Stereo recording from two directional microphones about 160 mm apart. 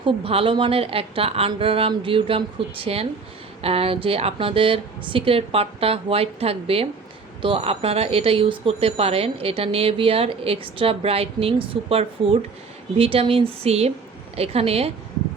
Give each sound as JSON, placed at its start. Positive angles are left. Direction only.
{"t": 0.0, "sound": "speech", "side_deg": -35}